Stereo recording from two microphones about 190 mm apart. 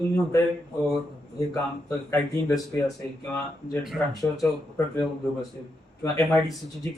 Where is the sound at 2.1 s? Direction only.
20° left (ahead or behind).